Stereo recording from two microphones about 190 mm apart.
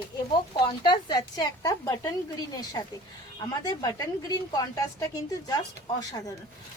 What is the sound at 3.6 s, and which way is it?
Speech, 20° left (ahead or behind).